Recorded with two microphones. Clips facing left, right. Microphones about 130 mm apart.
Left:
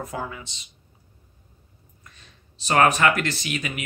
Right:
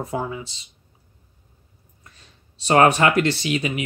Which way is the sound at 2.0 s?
30° right (ahead or behind).